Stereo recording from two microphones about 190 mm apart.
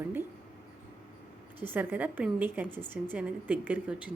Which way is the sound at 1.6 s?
10° right (ahead or behind).